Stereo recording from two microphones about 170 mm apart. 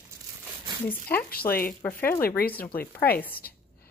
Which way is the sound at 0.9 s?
10° left (ahead or behind).